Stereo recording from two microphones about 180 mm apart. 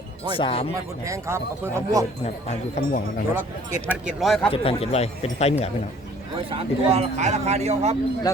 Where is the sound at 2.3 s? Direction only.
45° left (ahead or behind).